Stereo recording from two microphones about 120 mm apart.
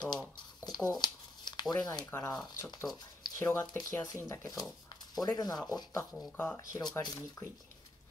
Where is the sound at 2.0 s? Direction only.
20° left (ahead or behind).